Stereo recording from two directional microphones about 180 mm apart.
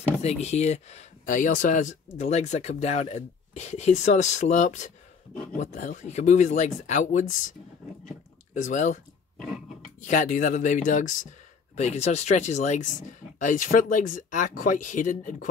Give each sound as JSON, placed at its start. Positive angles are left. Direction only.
{"t": 0.2, "sound": "speech", "side_deg": 35}
{"t": 8.5, "sound": "speech", "side_deg": 45}